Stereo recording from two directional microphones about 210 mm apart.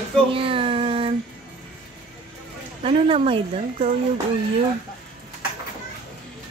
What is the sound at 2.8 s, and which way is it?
A woman's voice, 25° right (ahead or behind).